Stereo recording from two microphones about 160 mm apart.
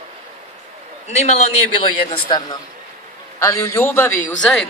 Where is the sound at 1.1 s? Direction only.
45° left (ahead or behind).